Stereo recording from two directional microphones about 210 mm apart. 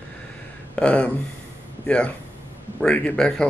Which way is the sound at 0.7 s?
5° left (ahead or behind).